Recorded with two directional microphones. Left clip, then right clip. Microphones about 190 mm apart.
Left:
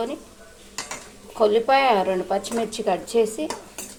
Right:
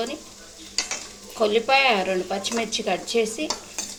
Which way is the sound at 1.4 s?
15° left (ahead or behind).